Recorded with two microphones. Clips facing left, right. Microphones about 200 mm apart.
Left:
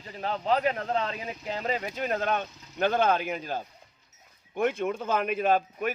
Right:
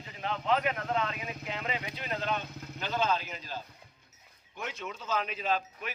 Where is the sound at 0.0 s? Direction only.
40° left (ahead or behind).